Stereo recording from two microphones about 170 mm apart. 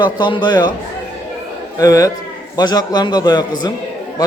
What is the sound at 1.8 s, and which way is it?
Speech, 20° left (ahead or behind).